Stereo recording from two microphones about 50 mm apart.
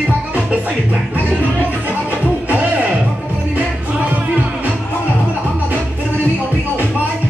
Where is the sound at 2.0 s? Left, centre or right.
Right.